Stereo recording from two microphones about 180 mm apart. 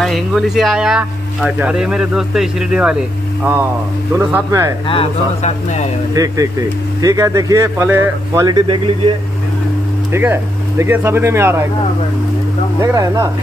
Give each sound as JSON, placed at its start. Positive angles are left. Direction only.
{"t": 0.0, "sound": "speech", "side_deg": 0}
{"t": 4.2, "sound": "speech", "side_deg": -15}
{"t": 4.8, "sound": "speech", "side_deg": 30}
{"t": 6.1, "sound": "speech", "side_deg": -20}
{"t": 8.5, "sound": "speech", "side_deg": -25}
{"t": 10.1, "sound": "speech", "side_deg": -15}
{"t": 12.8, "sound": "speech", "side_deg": -20}